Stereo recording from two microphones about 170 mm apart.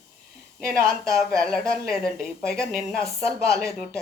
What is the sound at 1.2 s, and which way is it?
A woman's voice, 5° left (ahead or behind).